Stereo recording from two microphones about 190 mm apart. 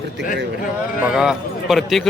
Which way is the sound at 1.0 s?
5° right (ahead or behind).